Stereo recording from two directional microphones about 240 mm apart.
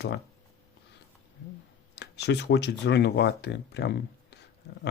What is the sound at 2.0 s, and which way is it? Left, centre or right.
Speech, left.